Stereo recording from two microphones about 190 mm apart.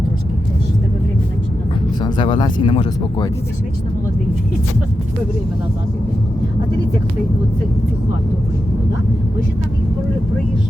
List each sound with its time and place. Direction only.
2.0 s speech: 25° left (ahead or behind)